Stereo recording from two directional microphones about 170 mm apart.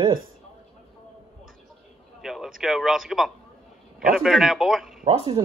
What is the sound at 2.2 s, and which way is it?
A man's voice, centre (ahead or behind).